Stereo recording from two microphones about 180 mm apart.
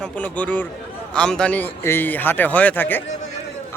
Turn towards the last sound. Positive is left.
turn(degrees=10)  # may be behind; listen again after turning